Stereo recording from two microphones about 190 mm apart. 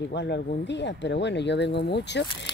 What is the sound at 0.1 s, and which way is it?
Speech, 65° left (ahead or behind).